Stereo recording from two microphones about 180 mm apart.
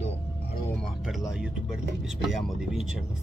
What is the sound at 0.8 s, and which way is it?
Speech, centre (ahead or behind).